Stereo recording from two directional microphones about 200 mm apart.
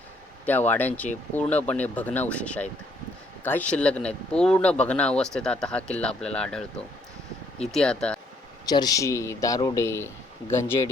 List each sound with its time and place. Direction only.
0.4 s speech: 10° left (ahead or behind)
8.6 s speech: 20° left (ahead or behind)